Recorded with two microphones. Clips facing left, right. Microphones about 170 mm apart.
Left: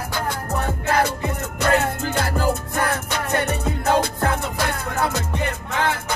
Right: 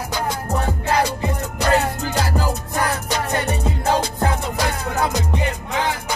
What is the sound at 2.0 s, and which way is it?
Music, 55° left (ahead or behind).